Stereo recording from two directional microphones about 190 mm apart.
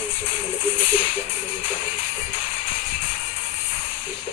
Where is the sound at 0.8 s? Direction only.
30° left (ahead or behind).